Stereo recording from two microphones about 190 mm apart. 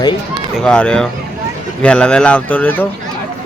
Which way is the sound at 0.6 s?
5° left (ahead or behind).